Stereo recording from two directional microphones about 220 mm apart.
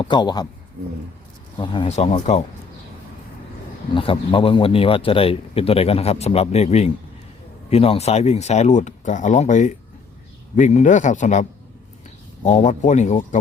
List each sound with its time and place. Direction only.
0.0 s a man's voice: 20° left (ahead or behind)
1.5 s a man's voice: 20° left (ahead or behind)
3.9 s a man's voice: 25° left (ahead or behind)
12.5 s speech: 30° left (ahead or behind)